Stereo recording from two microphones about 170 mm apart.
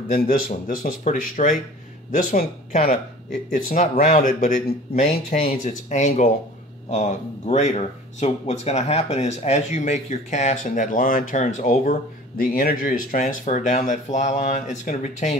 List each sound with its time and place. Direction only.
0.1 s speech: 55° left (ahead or behind)